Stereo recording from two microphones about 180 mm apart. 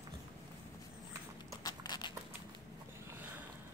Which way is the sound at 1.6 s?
20° left (ahead or behind).